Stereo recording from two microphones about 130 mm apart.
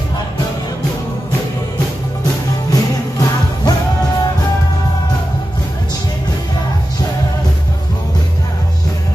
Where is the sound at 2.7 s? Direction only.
30° left (ahead or behind).